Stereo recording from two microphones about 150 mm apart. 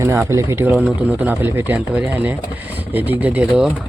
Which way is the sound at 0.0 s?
20° right (ahead or behind).